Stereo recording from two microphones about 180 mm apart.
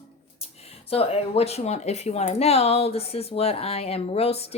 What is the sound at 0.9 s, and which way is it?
Speech, 35° left (ahead or behind).